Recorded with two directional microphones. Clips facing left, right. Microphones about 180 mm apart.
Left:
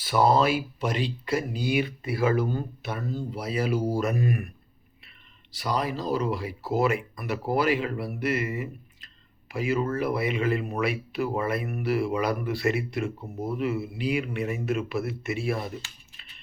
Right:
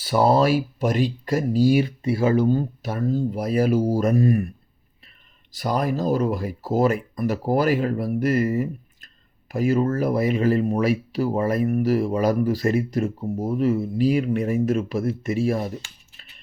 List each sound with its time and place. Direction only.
0.0 s speech: 30° right (ahead or behind)
2.8 s speech: 45° right (ahead or behind)
5.5 s speech: 50° right (ahead or behind)